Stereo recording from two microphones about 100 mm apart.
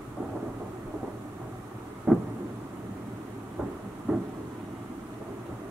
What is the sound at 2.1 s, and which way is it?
Thunder, 10° right (ahead or behind).